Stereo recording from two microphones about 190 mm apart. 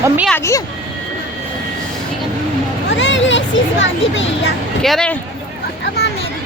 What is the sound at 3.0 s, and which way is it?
Speech, 75° left (ahead or behind).